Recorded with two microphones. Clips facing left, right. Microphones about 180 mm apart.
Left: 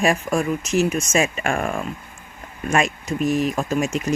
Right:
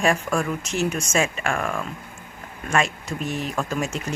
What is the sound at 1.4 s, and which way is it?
Speech, 25° left (ahead or behind).